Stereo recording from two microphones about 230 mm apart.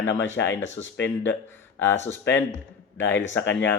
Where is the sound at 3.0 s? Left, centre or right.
Left.